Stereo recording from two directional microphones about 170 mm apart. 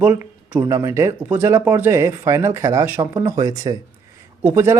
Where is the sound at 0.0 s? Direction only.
10° right (ahead or behind).